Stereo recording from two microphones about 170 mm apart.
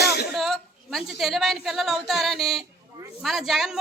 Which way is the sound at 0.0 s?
75° left (ahead or behind).